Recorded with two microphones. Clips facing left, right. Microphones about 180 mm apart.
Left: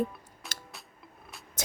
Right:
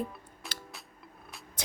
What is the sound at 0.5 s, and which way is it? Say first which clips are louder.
Music: right 2 dB; 45° left (ahead or behind).